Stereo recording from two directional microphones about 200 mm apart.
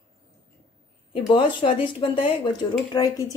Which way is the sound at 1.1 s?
25° left (ahead or behind).